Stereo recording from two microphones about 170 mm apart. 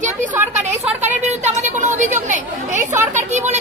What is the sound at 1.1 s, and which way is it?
A woman's voice, 40° right (ahead or behind).